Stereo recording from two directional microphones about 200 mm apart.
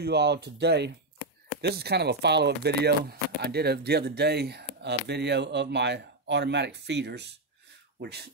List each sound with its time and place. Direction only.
0.0 s speech: 55° right (ahead or behind)